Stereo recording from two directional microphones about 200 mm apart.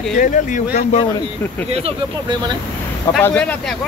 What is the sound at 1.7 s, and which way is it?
Speech, 30° right (ahead or behind).